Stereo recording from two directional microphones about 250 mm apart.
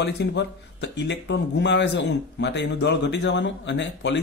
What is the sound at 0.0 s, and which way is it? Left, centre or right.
Speech, left.